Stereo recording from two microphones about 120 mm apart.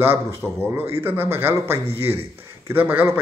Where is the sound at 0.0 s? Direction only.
20° right (ahead or behind).